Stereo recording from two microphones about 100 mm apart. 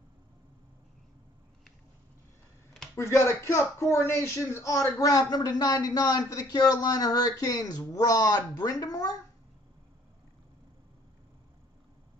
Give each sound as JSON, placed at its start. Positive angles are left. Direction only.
{"t": 3.0, "sound": "speech", "side_deg": 25}